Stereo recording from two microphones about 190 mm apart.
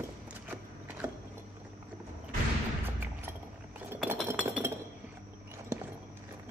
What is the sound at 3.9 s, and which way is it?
Cutlery, 10° right (ahead or behind).